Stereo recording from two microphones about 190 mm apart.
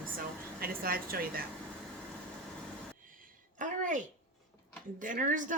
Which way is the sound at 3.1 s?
45° right (ahead or behind).